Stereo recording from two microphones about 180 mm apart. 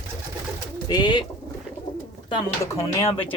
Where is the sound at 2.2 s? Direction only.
15° left (ahead or behind).